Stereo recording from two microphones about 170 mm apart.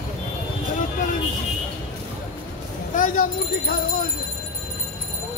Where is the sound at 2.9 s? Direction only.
55° left (ahead or behind).